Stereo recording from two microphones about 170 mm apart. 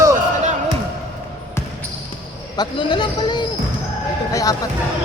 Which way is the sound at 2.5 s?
25° left (ahead or behind).